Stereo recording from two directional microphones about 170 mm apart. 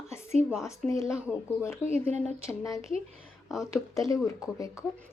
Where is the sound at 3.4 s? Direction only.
Centre (ahead or behind).